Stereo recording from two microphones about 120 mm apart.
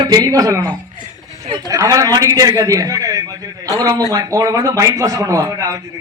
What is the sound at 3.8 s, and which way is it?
A man's voice, 30° right (ahead or behind).